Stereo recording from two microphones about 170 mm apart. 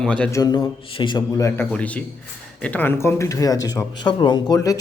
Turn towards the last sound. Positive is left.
turn(degrees=20)  # may be behind; listen again after turning